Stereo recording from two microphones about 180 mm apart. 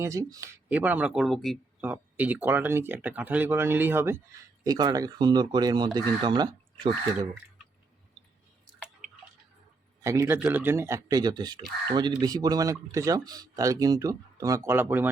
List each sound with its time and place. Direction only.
0.0 s speech: 15° right (ahead or behind); by 1.9 s centre (ahead or behind)
1.9 s speech: 10° right (ahead or behind)
10.0 s speech: 15° right (ahead or behind)